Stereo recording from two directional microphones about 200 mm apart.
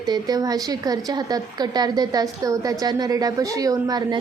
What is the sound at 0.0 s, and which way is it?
A woman's voice, 20° right (ahead or behind).